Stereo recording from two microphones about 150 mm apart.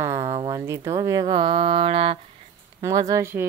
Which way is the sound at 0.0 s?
20° right (ahead or behind).